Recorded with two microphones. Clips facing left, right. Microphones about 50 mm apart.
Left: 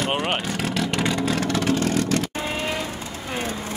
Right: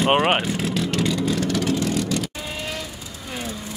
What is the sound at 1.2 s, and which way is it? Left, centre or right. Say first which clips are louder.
Vehicle: even; left.